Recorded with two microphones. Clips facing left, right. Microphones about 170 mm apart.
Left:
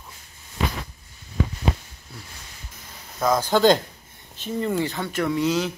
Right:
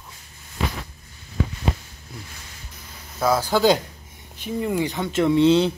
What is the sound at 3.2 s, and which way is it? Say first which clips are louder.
Speech: even; 5° right (ahead or behind).